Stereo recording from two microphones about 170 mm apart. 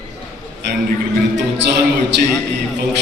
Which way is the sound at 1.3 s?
90° right.